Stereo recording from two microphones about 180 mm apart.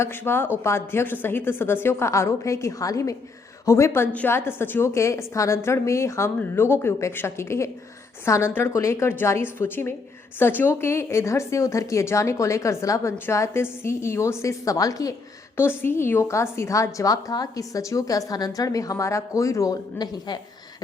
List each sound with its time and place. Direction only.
0.0 s a woman's voice: 15° left (ahead or behind)